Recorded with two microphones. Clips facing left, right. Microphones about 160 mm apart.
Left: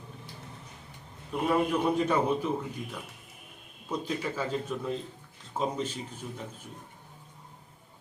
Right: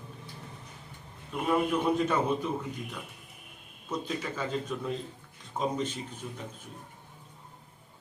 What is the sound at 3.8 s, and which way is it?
Speech, 10° left (ahead or behind).